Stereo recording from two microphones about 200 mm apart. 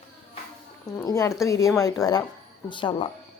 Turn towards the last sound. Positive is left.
turn(degrees=25)  # may be behind; listen again after turning